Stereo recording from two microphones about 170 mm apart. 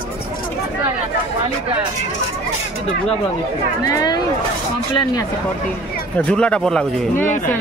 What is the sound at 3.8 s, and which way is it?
Speech, 20° left (ahead or behind).